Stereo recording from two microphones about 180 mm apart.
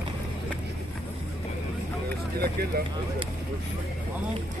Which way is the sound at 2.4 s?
60° right (ahead or behind).